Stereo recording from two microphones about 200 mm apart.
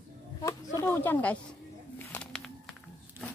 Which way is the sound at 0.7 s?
10° left (ahead or behind).